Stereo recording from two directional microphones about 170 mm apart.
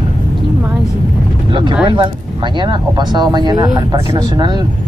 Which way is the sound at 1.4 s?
30° right (ahead or behind).